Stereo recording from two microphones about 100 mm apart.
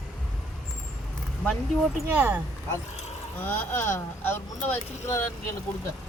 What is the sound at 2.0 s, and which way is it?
Speech, 20° right (ahead or behind).